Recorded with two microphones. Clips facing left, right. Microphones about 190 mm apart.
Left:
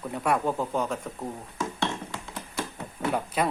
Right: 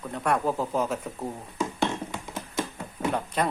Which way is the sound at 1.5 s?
15° right (ahead or behind).